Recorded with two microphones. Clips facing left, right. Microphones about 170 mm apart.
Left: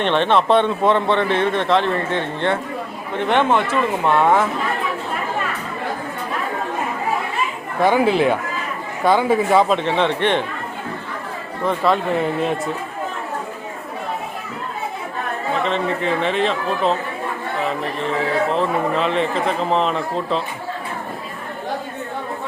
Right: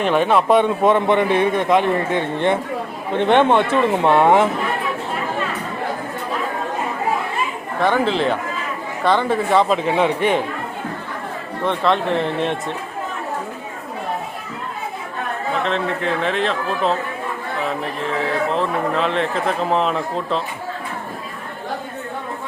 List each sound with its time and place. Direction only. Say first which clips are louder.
0.0 s speech: right 1 dB; 5° right (ahead or behind)
7.8 s a man's voice: left 2 dB; 10° left (ahead or behind); by 10.4 s 10° right (ahead or behind)
11.6 s a man's voice: even; 5° left (ahead or behind)
15.6 s a man's voice: left 1 dB; centre (ahead or behind)